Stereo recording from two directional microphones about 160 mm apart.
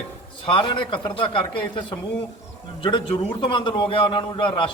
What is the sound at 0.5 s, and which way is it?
A man's voice, 30° left (ahead or behind).